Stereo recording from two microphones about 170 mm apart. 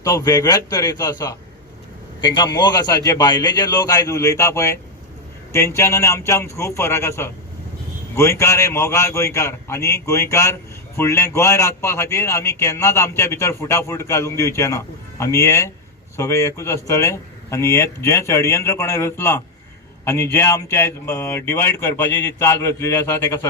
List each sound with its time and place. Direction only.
0.0 s a man's voice: 20° left (ahead or behind)